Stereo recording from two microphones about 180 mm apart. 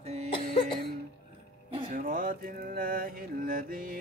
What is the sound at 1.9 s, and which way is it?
Music, 50° right (ahead or behind).